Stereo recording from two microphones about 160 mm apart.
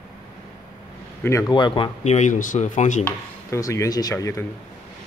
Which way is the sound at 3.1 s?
20° left (ahead or behind).